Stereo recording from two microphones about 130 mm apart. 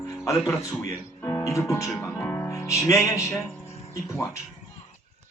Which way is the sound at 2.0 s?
15° left (ahead or behind).